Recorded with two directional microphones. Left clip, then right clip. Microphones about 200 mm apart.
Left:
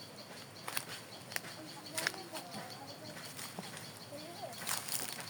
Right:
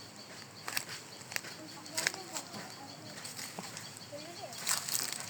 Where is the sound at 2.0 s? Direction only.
20° right (ahead or behind).